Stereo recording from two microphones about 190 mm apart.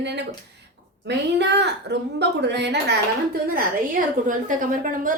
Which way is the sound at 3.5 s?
50° right (ahead or behind).